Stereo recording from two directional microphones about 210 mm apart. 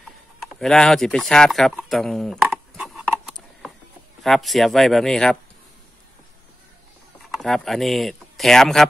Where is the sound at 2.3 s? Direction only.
Centre (ahead or behind).